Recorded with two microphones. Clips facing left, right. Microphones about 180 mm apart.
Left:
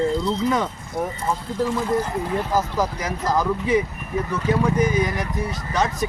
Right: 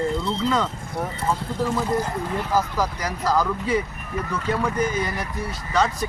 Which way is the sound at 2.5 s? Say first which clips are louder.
Right 1 dB; 20° left (ahead or behind).